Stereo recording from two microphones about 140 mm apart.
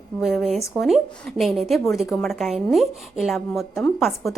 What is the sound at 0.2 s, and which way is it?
A woman's voice, centre (ahead or behind).